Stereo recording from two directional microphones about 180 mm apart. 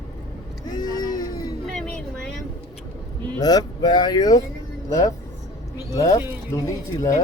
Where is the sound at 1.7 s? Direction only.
5° left (ahead or behind).